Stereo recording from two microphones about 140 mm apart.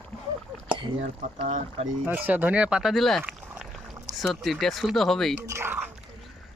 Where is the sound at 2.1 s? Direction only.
10° right (ahead or behind).